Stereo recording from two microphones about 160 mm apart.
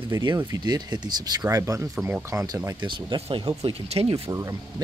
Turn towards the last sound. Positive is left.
turn(degrees=-20)  # may be behind; listen again after turning